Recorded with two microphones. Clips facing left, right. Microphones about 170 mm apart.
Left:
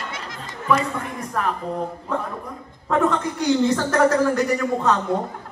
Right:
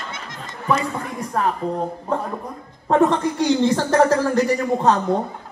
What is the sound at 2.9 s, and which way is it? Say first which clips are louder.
A man's voice: right 4 dB; 35° right (ahead or behind).